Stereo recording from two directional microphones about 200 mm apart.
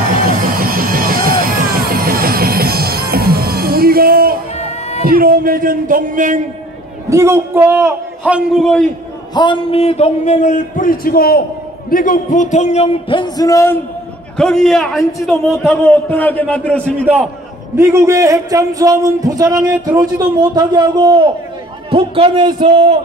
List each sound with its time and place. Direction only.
0.1 s music: 45° right (ahead or behind)
4.6 s a sound: 35° left (ahead or behind)
5.0 s music: 45° right (ahead or behind)
7.1 s a man's voice: 15° right (ahead or behind)
9.3 s a man's voice: 25° left (ahead or behind)
14.3 s a man's voice: 5° left (ahead or behind)
15.7 s a man's voice: 10° left (ahead or behind)
17.7 s a man's voice: 15° right (ahead or behind)